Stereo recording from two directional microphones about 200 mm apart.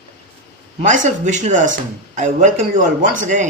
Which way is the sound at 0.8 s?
35° right (ahead or behind).